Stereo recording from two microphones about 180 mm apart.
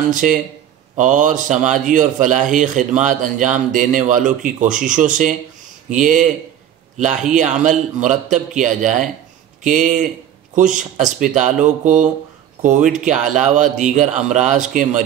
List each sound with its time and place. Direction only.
0.1 s a man's voice: 45° right (ahead or behind)